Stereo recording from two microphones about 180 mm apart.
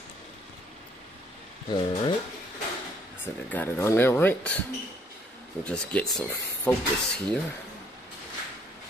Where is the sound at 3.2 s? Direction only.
10° left (ahead or behind).